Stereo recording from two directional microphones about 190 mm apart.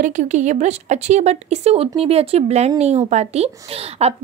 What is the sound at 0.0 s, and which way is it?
Speech, 40° right (ahead or behind).